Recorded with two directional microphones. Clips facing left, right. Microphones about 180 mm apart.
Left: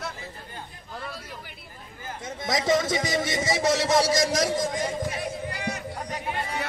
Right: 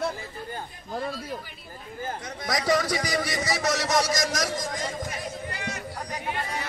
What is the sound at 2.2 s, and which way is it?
A man's voice, 25° left (ahead or behind).